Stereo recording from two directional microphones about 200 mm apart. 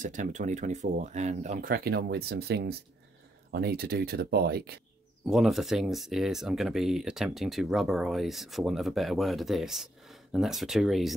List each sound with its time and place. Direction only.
0.0 s speech: 40° right (ahead or behind)
5.2 s speech: centre (ahead or behind)